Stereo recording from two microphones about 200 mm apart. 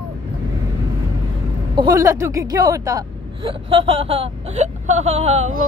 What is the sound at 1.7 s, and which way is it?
Speech, 20° right (ahead or behind).